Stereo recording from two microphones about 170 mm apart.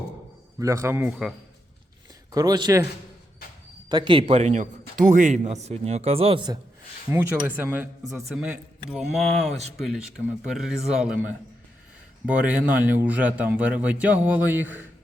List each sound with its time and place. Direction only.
0.6 s a man's voice: 15° right (ahead or behind)
2.3 s a man's voice: 20° right (ahead or behind)
3.8 s a man's voice: 25° right (ahead or behind)
7.1 s a man's voice: 10° right (ahead or behind)
8.9 s a man's voice: centre (ahead or behind)